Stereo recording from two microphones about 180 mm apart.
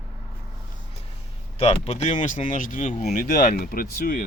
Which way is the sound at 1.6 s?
35° left (ahead or behind).